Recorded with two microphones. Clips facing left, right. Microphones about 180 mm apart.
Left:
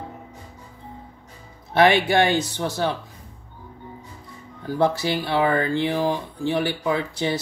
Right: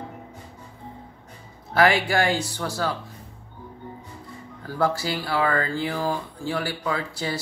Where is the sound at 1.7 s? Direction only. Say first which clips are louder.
Left 3 dB; 25° left (ahead or behind).